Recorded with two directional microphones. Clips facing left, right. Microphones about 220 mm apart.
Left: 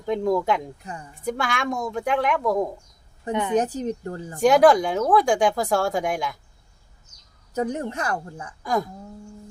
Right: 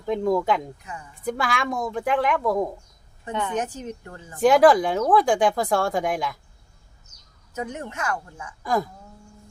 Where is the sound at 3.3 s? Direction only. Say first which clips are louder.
Left 3 dB; 20° left (ahead or behind).